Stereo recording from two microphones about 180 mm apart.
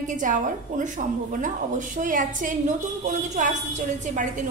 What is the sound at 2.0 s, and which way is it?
A woman's voice, 45° right (ahead or behind).